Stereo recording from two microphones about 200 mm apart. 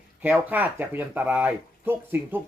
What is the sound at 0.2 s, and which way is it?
Speech, 10° right (ahead or behind).